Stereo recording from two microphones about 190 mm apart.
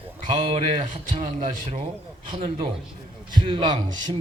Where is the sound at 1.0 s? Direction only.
45° right (ahead or behind).